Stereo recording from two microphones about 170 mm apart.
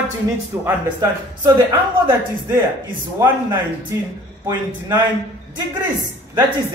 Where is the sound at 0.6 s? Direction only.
25° right (ahead or behind).